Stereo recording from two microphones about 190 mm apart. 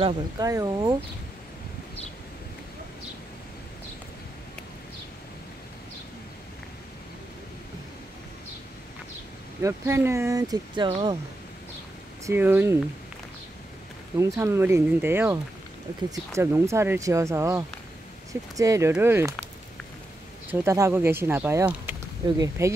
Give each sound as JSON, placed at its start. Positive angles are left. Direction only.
{"t": 0.0, "sound": "speech", "side_deg": -20}
{"t": 9.6, "sound": "speech", "side_deg": -15}
{"t": 12.3, "sound": "speech", "side_deg": -10}
{"t": 14.1, "sound": "speech", "side_deg": -15}
{"t": 20.5, "sound": "speech", "side_deg": -15}